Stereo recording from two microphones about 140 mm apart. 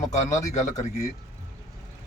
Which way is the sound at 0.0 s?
60° left (ahead or behind).